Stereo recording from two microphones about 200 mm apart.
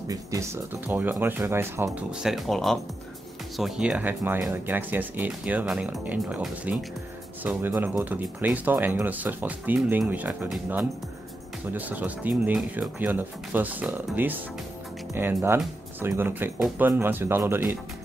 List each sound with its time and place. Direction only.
0.1 s speech: 15° right (ahead or behind)